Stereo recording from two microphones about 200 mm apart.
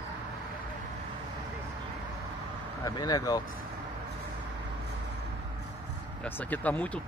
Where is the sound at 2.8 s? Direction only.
20° left (ahead or behind).